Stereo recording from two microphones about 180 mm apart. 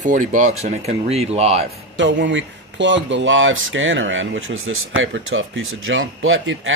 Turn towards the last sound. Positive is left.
turn(degrees=-90)